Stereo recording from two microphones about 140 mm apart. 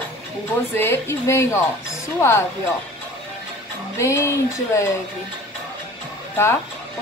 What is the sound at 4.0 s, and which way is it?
Speech, 20° left (ahead or behind).